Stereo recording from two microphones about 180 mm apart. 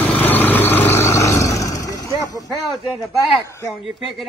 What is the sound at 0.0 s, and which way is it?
Vehicle, 10° left (ahead or behind).